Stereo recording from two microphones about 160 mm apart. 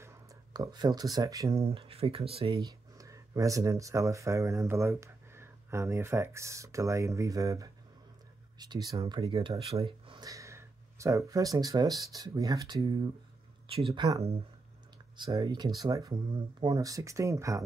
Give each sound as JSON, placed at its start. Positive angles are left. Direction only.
{"t": 0.0, "sound": "speech", "side_deg": -20}
{"t": 1.6, "sound": "speech", "side_deg": -35}
{"t": 2.6, "sound": "speech", "side_deg": -20}
{"t": 15.3, "sound": "speech", "side_deg": -25}